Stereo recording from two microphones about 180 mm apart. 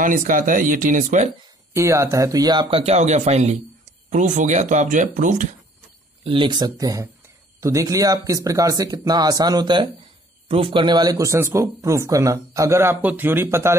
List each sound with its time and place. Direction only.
0.0 s speech: 50° right (ahead or behind)
1.7 s speech: 15° right (ahead or behind); by 5.6 s 45° right (ahead or behind)
6.2 s speech: 25° right (ahead or behind)